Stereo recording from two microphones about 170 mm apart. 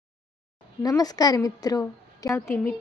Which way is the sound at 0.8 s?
20° left (ahead or behind).